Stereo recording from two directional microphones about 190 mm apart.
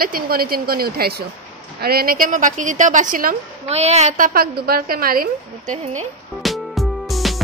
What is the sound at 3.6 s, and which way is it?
A woman's voice, 35° right (ahead or behind).